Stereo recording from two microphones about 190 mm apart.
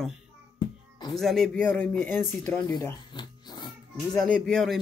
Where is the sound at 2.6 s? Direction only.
20° left (ahead or behind).